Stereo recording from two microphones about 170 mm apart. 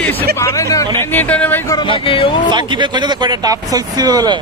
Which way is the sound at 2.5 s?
25° right (ahead or behind).